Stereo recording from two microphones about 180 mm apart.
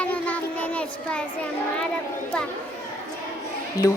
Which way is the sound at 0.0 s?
10° left (ahead or behind).